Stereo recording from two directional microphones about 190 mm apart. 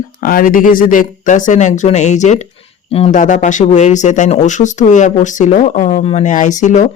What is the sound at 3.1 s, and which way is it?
Speech, 40° left (ahead or behind).